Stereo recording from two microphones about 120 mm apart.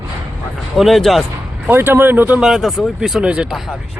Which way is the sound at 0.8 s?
Centre (ahead or behind).